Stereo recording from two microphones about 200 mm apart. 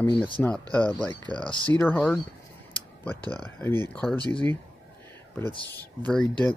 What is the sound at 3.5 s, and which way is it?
Speech, 10° left (ahead or behind).